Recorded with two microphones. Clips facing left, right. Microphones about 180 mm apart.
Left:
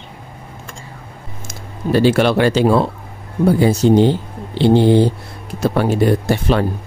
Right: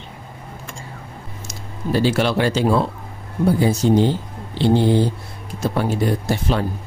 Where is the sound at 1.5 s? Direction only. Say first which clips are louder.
Left 5 dB; 65° left (ahead or behind).